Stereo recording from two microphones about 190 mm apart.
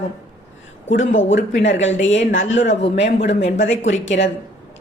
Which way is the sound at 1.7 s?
80° left.